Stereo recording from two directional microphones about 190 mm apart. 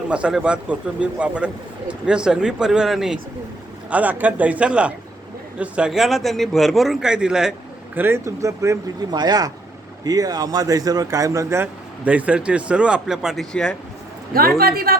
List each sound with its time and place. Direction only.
0.1 s a man's voice: 5° right (ahead or behind)
14.6 s a woman's voice: 55° right (ahead or behind)